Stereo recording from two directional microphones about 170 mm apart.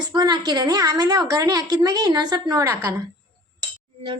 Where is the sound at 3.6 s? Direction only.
30° right (ahead or behind).